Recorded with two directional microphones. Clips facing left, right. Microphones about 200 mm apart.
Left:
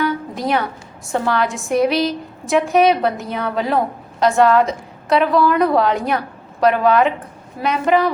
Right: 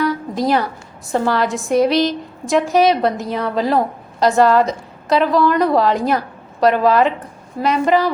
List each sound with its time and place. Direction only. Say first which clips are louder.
0.0 s a woman's voice: right 2 dB; centre (ahead or behind)